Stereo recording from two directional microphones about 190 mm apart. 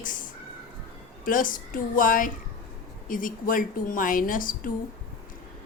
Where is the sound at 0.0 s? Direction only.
45° left (ahead or behind).